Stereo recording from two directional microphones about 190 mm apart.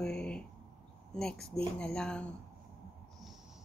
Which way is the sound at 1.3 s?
55° left (ahead or behind).